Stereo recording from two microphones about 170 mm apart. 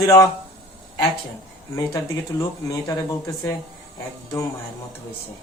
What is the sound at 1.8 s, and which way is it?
A man's voice, 20° left (ahead or behind).